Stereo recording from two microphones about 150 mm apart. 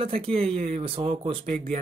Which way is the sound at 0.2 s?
40° right (ahead or behind).